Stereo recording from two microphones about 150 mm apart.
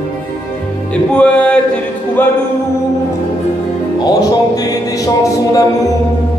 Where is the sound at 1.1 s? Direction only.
5° left (ahead or behind).